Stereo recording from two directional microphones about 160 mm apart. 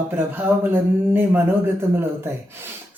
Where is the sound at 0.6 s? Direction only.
10° right (ahead or behind).